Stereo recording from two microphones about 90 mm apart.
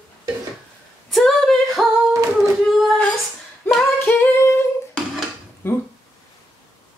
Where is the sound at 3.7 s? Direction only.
25° left (ahead or behind).